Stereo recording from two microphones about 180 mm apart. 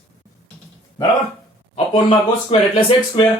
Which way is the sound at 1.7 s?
30° left (ahead or behind).